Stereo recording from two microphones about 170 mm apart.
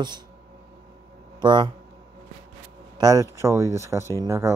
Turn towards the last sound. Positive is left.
turn(degrees=-15)  # may be behind; listen again after turning